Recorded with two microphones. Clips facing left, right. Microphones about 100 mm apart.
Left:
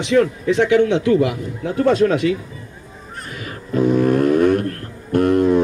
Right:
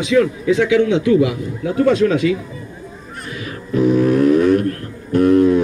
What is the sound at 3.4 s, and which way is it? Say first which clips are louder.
Music: right 2 dB; 50° left (ahead or behind).